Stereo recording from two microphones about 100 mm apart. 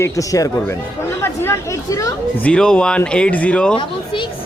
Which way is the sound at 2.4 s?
10° left (ahead or behind).